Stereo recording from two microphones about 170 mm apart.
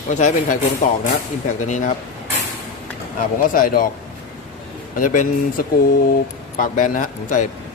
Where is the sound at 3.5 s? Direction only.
55° left (ahead or behind).